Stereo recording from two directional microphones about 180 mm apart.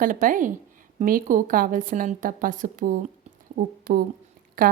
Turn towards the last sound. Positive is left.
turn(degrees=-50)  # may be behind; listen again after turning